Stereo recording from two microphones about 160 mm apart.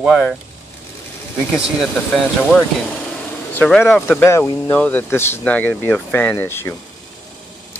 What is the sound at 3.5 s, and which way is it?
Speech, 10° left (ahead or behind).